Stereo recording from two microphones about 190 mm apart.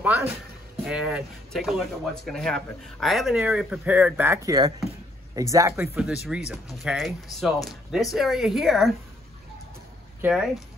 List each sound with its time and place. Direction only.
0.8 s speech: 5° right (ahead or behind)
5.9 s speech: 5° right (ahead or behind)
10.2 s speech: 5° right (ahead or behind)